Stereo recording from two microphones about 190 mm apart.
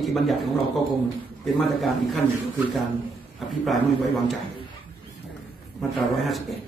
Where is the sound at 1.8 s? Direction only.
Centre (ahead or behind).